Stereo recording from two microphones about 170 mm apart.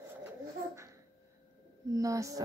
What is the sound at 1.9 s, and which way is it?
Speech, 20° right (ahead or behind).